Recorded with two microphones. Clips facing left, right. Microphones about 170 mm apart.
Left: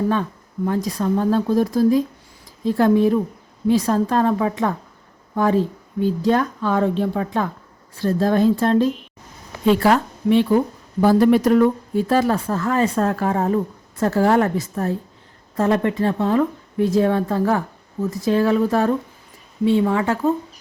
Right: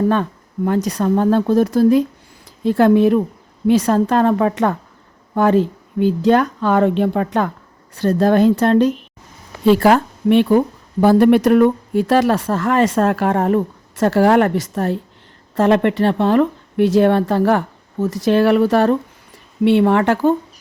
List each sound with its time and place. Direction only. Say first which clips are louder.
0.1 s speech: right 4 dB; 70° right (ahead or behind)
9.6 s speech: right 4 dB; 40° right (ahead or behind)
9.9 s a woman's voice: right 3 dB; 65° right (ahead or behind)
18.0 s a woman's voice: right 4 dB; 90° right
19.6 s speech: right 4 dB; 70° right (ahead or behind)